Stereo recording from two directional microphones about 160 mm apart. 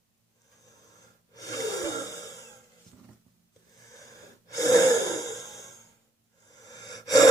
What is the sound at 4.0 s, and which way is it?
Wheeze, 20° left (ahead or behind).